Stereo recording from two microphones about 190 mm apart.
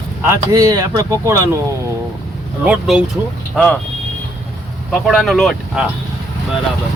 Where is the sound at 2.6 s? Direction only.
5° right (ahead or behind).